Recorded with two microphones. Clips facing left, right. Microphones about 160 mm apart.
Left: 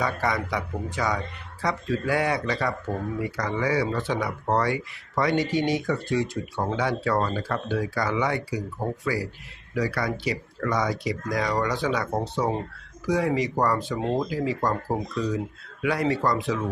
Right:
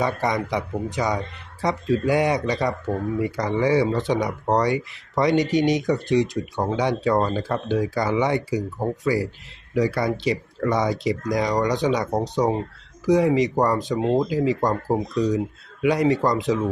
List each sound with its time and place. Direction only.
0.0 s speech: 20° right (ahead or behind)